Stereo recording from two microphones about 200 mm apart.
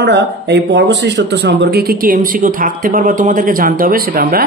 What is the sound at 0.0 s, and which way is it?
A man's voice, 60° right (ahead or behind).